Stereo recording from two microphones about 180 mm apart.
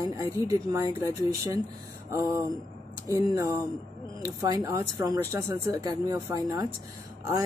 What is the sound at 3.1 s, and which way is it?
Speech, 20° right (ahead or behind).